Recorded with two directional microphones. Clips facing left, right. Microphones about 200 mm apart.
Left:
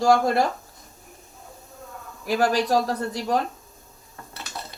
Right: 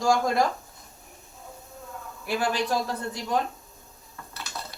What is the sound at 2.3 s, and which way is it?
Speech, 40° left (ahead or behind).